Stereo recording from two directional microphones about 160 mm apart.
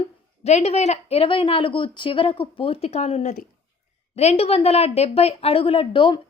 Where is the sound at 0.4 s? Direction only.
40° left (ahead or behind).